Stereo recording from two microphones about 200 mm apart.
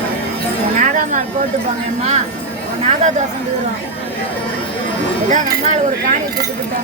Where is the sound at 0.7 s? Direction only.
40° right (ahead or behind).